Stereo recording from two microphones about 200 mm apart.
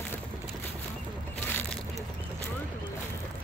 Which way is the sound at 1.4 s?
10° left (ahead or behind).